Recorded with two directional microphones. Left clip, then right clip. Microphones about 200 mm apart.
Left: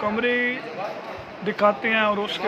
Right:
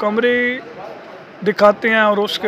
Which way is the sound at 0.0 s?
30° right (ahead or behind).